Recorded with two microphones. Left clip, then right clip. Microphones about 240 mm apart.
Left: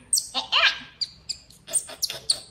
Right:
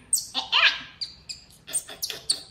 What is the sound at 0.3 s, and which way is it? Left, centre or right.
Dog, left.